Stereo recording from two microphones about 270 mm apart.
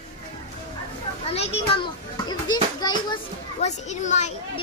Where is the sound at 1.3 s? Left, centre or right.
Left.